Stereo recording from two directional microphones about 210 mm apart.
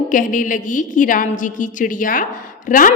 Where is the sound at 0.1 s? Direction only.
40° left (ahead or behind).